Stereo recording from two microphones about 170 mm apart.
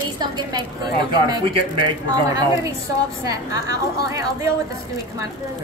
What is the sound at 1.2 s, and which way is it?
Speech, 30° right (ahead or behind).